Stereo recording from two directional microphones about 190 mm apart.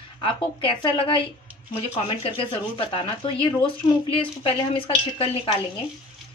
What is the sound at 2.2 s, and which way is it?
A woman's voice, 30° left (ahead or behind).